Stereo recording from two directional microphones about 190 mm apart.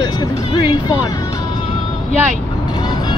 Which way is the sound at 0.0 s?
20° left (ahead or behind).